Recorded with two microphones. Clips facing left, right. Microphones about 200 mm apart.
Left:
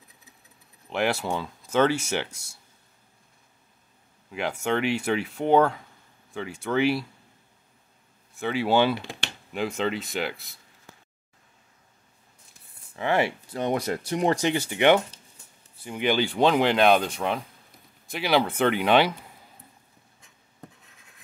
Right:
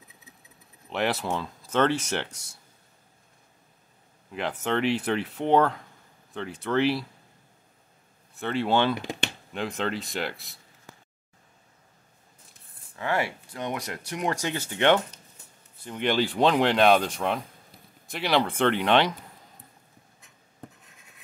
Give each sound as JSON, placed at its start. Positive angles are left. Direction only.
{"t": 0.8, "sound": "speech", "side_deg": 0}
{"t": 4.3, "sound": "speech", "side_deg": 0}
{"t": 8.4, "sound": "speech", "side_deg": 5}
{"t": 12.9, "sound": "speech", "side_deg": 20}
{"t": 14.3, "sound": "speech", "side_deg": 15}